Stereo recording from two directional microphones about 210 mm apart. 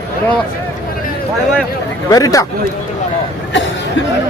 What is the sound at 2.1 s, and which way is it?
Speech, 15° left (ahead or behind).